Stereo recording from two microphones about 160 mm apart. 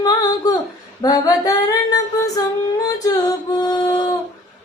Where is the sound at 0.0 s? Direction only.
25° left (ahead or behind).